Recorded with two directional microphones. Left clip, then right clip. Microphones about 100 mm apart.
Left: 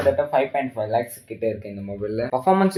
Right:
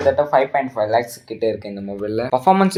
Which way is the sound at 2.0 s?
40° right (ahead or behind).